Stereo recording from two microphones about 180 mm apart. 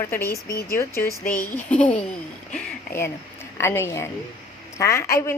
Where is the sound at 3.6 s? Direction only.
15° left (ahead or behind).